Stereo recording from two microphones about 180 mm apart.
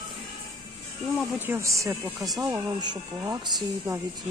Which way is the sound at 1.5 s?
15° right (ahead or behind).